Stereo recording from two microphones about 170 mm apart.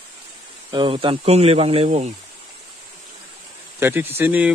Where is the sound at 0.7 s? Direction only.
30° right (ahead or behind).